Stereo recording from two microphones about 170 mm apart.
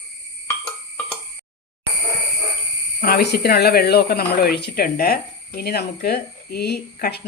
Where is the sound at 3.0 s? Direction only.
65° left (ahead or behind).